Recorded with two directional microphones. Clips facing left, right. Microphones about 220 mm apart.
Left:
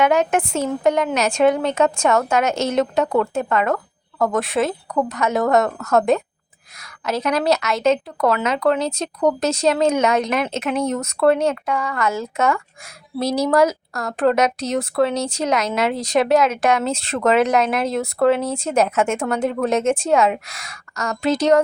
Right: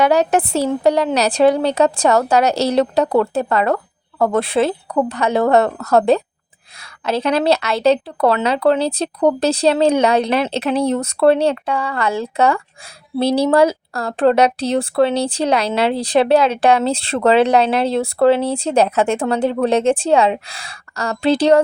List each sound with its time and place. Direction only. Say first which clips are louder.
0.0 s speech: right 3 dB; 35° right (ahead or behind)